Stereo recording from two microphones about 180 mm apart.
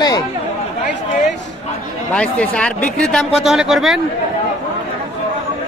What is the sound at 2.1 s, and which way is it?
Speech, 5° left (ahead or behind).